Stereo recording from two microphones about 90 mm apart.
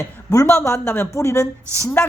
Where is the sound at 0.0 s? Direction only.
40° left (ahead or behind).